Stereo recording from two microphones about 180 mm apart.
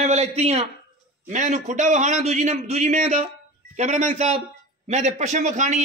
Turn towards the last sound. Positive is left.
turn(degrees=-40)  # may be behind; listen again after turning